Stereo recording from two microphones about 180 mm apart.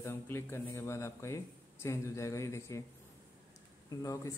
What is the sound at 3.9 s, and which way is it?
Speech, 20° left (ahead or behind).